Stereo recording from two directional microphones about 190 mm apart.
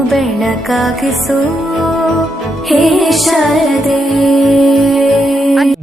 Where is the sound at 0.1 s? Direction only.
Centre (ahead or behind).